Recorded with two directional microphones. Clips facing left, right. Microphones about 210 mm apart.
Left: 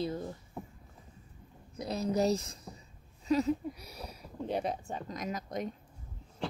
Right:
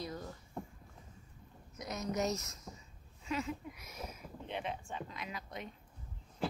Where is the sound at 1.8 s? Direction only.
30° left (ahead or behind).